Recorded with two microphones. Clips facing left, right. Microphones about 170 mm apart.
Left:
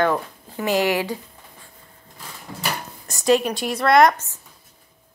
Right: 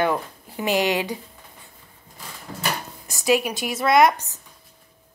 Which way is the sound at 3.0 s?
5° right (ahead or behind).